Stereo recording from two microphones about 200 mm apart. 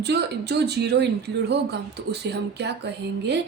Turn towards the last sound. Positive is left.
turn(degrees=-60)  # may be behind; listen again after turning